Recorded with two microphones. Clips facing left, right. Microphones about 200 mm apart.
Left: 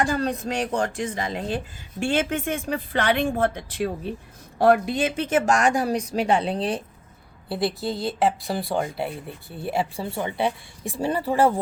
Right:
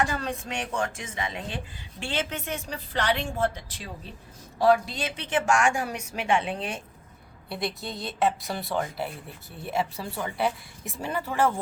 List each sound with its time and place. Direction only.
0.0 s a woman's voice: 35° left (ahead or behind)